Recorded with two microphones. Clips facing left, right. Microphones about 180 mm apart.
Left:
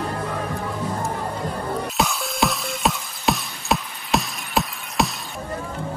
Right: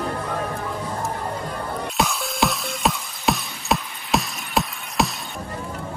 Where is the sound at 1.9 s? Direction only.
Centre (ahead or behind).